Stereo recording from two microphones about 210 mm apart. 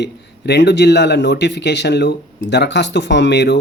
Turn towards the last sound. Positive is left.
turn(degrees=55)  # may be behind; listen again after turning